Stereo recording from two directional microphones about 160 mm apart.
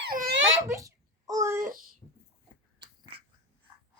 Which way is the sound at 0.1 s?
65° right (ahead or behind).